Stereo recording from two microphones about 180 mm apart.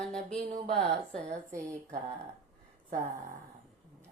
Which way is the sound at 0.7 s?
5° left (ahead or behind).